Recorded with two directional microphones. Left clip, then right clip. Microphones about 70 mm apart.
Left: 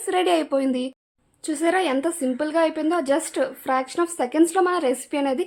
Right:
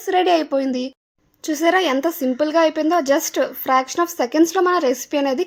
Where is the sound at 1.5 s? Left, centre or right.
Right.